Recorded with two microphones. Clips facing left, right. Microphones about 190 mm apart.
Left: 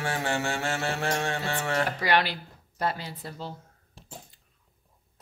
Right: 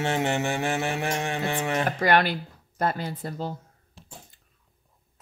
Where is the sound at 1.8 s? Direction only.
50° right (ahead or behind).